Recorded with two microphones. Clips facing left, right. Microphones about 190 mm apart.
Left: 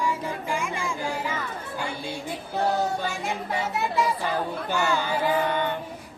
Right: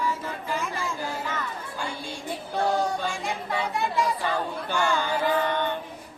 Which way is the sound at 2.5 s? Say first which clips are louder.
Even; 5° left (ahead or behind).